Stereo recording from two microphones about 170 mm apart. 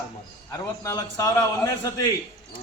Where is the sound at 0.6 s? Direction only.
20° left (ahead or behind).